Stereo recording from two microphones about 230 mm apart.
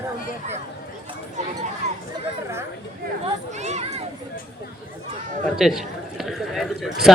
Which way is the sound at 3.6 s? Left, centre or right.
Right.